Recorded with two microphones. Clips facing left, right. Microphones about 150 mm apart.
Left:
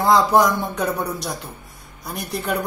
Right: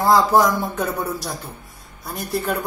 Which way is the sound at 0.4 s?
Centre (ahead or behind).